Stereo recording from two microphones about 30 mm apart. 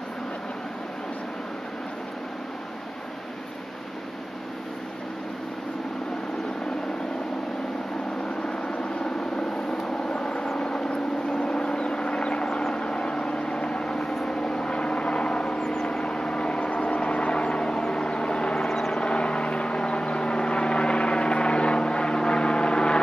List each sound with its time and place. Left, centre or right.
8.5 s vehicle: left
15.7 s vehicle: centre
16.0 s vehicle: left
16.7 s vehicle: left
18.7 s vehicle: centre
18.9 s vehicle: left